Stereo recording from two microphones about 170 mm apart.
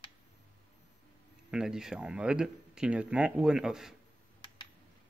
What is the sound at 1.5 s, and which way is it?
Speech, 5° right (ahead or behind).